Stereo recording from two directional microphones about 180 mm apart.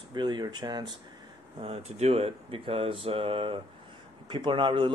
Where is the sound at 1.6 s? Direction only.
35° right (ahead or behind).